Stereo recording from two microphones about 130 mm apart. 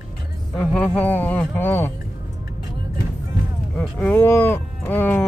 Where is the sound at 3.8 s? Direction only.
15° left (ahead or behind).